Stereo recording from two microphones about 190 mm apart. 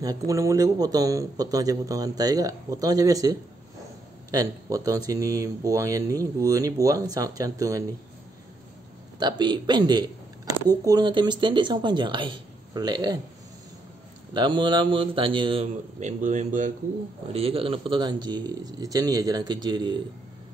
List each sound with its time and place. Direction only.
0.0 s a man's voice: 20° right (ahead or behind)
9.2 s a man's voice: 25° right (ahead or behind)
14.3 s a man's voice: 25° right (ahead or behind); by 16.7 s 40° right (ahead or behind)
17.3 s a man's voice: 30° right (ahead or behind)